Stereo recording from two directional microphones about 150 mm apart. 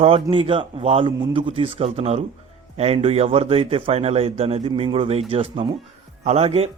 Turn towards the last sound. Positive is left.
turn(degrees=-45)  # may be behind; listen again after turning